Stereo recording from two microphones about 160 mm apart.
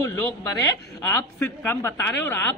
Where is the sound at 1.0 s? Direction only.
10° left (ahead or behind).